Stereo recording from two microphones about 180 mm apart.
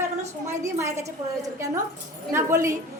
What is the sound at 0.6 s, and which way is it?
A woman's voice, 15° right (ahead or behind).